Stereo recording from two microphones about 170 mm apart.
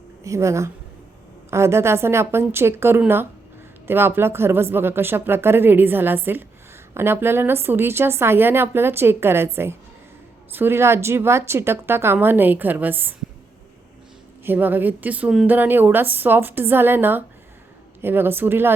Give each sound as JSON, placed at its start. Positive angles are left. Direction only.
{"t": 0.3, "sound": "a woman's voice", "side_deg": -15}
{"t": 14.4, "sound": "a woman's voice", "side_deg": -10}